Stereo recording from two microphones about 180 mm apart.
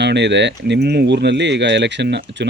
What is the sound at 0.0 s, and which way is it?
Speech, 70° right (ahead or behind).